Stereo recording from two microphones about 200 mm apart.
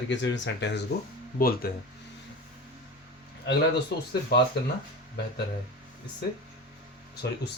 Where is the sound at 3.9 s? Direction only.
55° left (ahead or behind).